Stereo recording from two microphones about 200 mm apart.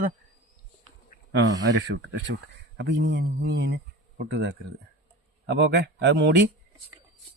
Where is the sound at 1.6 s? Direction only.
60° right (ahead or behind).